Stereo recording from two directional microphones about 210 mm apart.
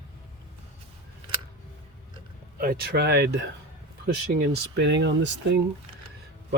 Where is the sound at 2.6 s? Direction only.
50° right (ahead or behind).